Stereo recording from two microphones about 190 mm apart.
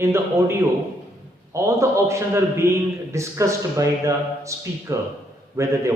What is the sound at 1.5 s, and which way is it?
Speech, 15° right (ahead or behind).